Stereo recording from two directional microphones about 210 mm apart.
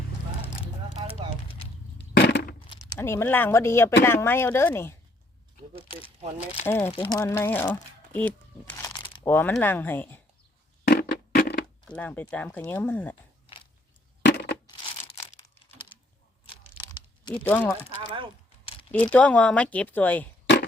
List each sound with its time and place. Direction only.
2.0 s a sound: 55° left (ahead or behind)
2.6 s speech: 20° left (ahead or behind)
6.7 s speech: 10° left (ahead or behind)
9.2 s speech: 10° left (ahead or behind)
10.8 s a sound: 45° left (ahead or behind)
11.9 s speech: 5° left (ahead or behind)
14.2 s crushing: 55° left (ahead or behind)
17.4 s speech: 10° left (ahead or behind)
17.8 s speech: 25° right (ahead or behind)
19.1 s speech: 5° left (ahead or behind)